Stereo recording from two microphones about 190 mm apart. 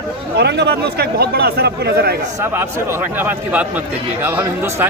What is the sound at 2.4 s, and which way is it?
A man's voice, 15° right (ahead or behind).